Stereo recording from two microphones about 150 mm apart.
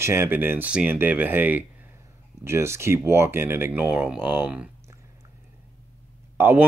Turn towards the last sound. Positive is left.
turn(degrees=-15)  # may be behind; listen again after turning